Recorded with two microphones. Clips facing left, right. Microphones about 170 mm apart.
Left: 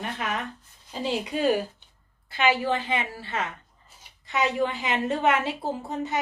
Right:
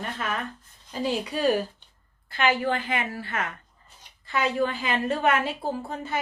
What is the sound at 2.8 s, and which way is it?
A woman's voice, 25° left (ahead or behind).